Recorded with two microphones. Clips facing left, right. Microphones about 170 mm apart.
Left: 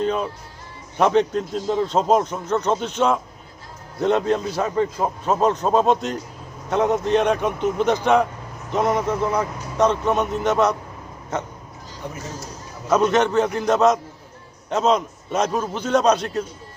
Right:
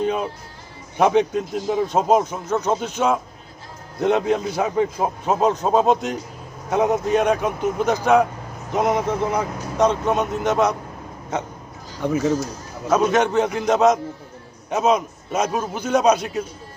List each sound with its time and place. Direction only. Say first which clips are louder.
0.0 s a man's voice: even; 15° right (ahead or behind)
8.7 s a man's voice: even; 15° right (ahead or behind)
12.0 s speech: right 13 dB; 85° right
12.9 s a man's voice: even; 10° right (ahead or behind)